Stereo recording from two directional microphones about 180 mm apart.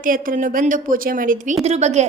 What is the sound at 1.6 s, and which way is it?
Speech, 35° right (ahead or behind).